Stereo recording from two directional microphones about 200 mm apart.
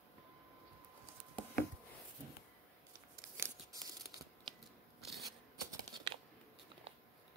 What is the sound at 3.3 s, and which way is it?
Scissors, 15° right (ahead or behind).